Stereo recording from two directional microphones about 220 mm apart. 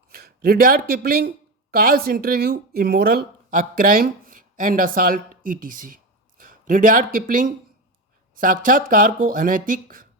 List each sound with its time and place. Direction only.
0.1 s speech: 45° right (ahead or behind)